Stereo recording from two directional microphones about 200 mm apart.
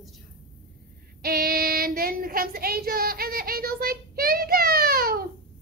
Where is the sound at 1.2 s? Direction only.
50° right (ahead or behind).